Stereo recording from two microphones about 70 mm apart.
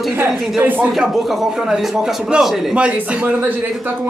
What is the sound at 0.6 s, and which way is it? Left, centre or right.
Speech, right.